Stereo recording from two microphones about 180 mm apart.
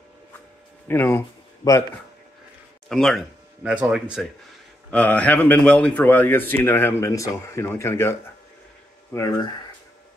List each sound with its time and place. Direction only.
0.8 s speech: 10° left (ahead or behind)
2.9 s speech: centre (ahead or behind)
4.9 s speech: 5° left (ahead or behind)